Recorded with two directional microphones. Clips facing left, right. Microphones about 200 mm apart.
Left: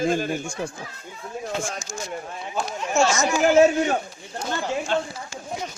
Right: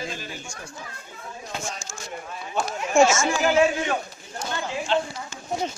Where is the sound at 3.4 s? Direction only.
45° left (ahead or behind).